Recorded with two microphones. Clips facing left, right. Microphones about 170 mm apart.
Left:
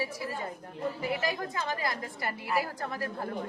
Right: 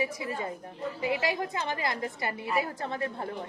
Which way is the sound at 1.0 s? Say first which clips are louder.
Right 5 dB; 20° right (ahead or behind).